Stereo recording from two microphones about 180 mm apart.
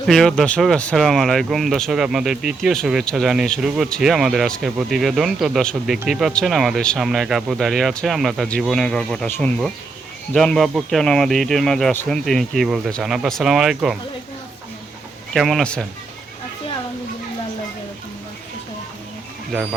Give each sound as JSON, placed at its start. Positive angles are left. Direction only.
{"t": 0.1, "sound": "speech", "side_deg": 5}
{"t": 15.3, "sound": "speech", "side_deg": 0}